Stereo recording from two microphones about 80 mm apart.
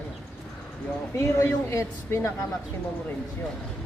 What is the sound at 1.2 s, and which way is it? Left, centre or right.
Speech, left.